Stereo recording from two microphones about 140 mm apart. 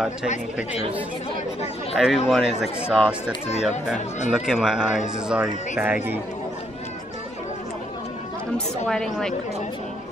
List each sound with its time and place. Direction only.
2.0 s speech: 5° right (ahead or behind)
8.8 s speech: 5° left (ahead or behind)